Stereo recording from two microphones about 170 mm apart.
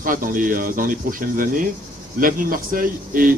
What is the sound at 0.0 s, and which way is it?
Speech, 55° right (ahead or behind).